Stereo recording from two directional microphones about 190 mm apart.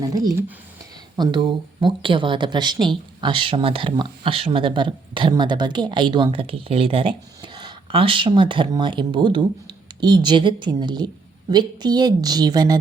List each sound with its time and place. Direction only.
0.0 s speech: 20° right (ahead or behind)